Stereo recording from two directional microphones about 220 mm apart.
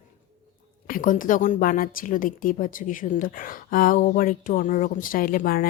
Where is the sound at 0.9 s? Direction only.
40° left (ahead or behind).